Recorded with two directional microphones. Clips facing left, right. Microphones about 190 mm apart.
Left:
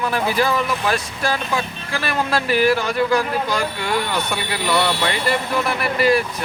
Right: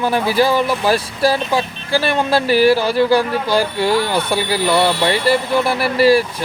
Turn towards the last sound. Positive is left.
turn(degrees=-30)  # may be behind; listen again after turning